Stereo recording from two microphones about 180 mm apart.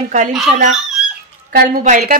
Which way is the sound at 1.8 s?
40° right (ahead or behind).